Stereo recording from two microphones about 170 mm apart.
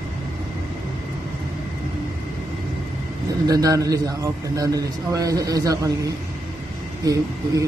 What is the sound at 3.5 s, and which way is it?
A man's voice, 20° right (ahead or behind).